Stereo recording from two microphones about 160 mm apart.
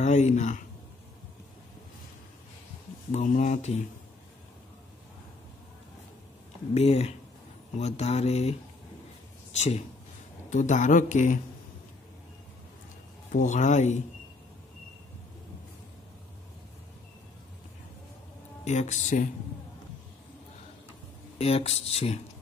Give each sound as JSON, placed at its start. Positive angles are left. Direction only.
{"t": 0.0, "sound": "speech", "side_deg": 45}
{"t": 3.1, "sound": "speech", "side_deg": 50}
{"t": 6.7, "sound": "speech", "side_deg": 40}
{"t": 13.3, "sound": "speech", "side_deg": 50}
{"t": 18.6, "sound": "speech", "side_deg": 45}
{"t": 21.4, "sound": "speech", "side_deg": 40}